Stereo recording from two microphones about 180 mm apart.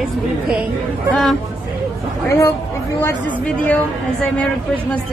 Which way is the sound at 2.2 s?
15° left (ahead or behind).